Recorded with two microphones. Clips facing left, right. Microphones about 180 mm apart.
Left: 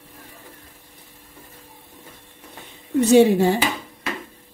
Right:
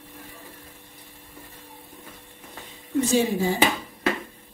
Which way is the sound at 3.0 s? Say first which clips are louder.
Left 8 dB; 70° left (ahead or behind).